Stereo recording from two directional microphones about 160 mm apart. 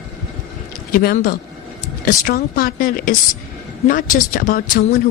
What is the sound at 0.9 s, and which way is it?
Speech, 65° left (ahead or behind).